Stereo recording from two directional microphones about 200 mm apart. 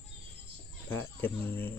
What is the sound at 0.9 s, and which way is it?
Speech, 10° left (ahead or behind).